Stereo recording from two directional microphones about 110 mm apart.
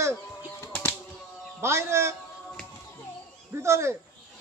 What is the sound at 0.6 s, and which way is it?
Bird flight, 15° left (ahead or behind).